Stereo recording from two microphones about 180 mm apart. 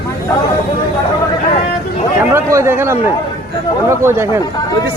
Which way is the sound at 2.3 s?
15° right (ahead or behind).